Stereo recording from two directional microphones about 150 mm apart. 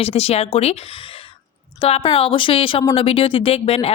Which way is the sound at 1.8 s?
40° left (ahead or behind).